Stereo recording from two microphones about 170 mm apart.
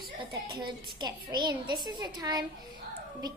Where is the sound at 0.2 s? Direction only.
25° right (ahead or behind).